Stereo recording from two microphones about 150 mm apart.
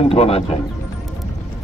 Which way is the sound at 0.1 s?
40° left (ahead or behind).